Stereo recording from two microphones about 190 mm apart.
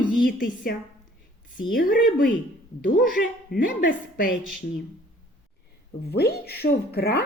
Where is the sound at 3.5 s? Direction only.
45° left (ahead or behind).